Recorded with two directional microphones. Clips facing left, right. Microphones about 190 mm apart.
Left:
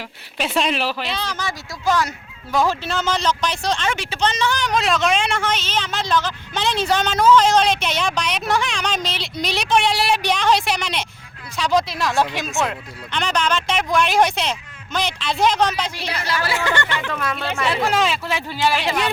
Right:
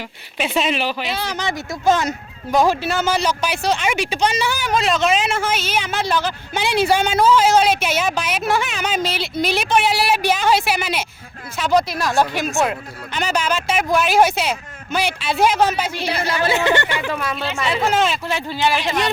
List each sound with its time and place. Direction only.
0.3 s a woman's voice: centre (ahead or behind)
16.0 s a woman's voice: 25° right (ahead or behind); by 18.2 s centre (ahead or behind)